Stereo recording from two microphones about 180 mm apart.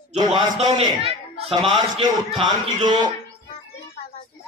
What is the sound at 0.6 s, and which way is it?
A man's voice, 30° right (ahead or behind).